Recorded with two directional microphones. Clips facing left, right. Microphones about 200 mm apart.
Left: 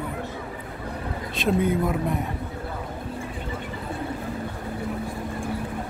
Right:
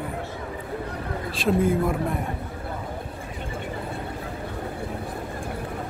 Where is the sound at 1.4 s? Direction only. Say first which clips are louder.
Right 1 dB; centre (ahead or behind).